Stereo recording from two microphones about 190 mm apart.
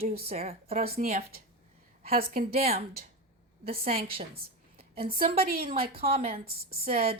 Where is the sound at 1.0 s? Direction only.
50° right (ahead or behind).